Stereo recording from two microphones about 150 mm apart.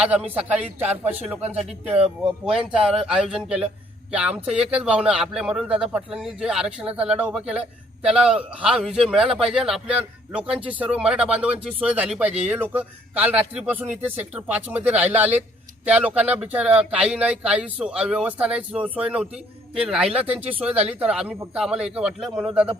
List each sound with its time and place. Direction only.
0.3 s speech: 10° right (ahead or behind)